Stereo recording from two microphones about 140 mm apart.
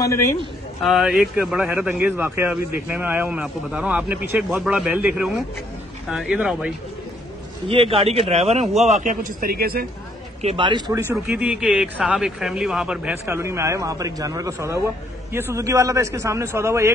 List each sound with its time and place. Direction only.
0.0 s a man's voice: 20° left (ahead or behind)
0.8 s a man's voice: 5° right (ahead or behind)
7.6 s a man's voice: 40° right (ahead or behind); by 9.8 s 90° right
10.4 s a man's voice: 40° right (ahead or behind)
11.2 s a man's voice: 5° right (ahead or behind)